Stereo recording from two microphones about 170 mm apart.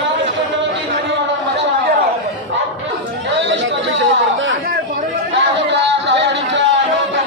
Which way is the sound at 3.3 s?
90° right.